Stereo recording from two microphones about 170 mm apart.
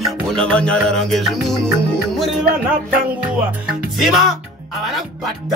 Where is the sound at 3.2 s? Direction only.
5° right (ahead or behind).